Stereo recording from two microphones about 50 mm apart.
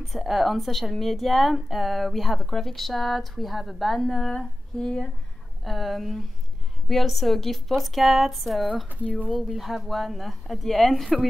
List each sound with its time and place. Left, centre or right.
0.0 s speech: centre
5.6 s speech: centre